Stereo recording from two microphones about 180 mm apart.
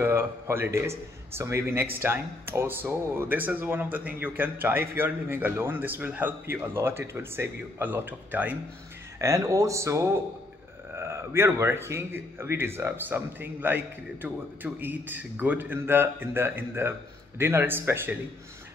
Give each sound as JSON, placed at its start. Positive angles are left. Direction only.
{"t": 0.0, "sound": "speech", "side_deg": -15}